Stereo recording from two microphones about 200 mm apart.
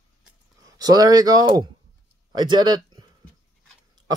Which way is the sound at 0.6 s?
20° right (ahead or behind).